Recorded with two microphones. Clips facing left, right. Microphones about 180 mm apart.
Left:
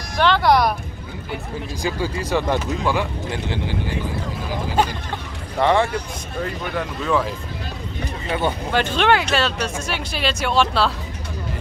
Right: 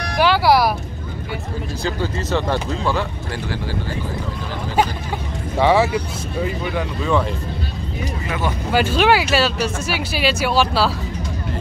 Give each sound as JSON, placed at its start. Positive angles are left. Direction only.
{"t": 0.2, "sound": "speech", "side_deg": -5}
{"t": 1.8, "sound": "speech", "side_deg": 10}
{"t": 5.6, "sound": "speech", "side_deg": -5}
{"t": 8.3, "sound": "speech", "side_deg": 30}
{"t": 8.7, "sound": "speech", "side_deg": -5}